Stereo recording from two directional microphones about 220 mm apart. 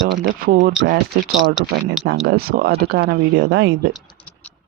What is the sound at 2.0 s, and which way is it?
Speech, 50° right (ahead or behind).